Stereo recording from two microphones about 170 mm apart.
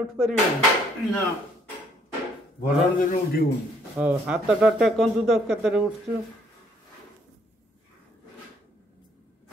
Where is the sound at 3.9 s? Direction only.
10° right (ahead or behind).